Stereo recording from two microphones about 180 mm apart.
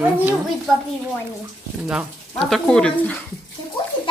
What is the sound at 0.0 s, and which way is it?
Speech, 10° right (ahead or behind).